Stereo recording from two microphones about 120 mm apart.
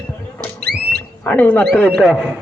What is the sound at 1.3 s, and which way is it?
Speech, 15° left (ahead or behind).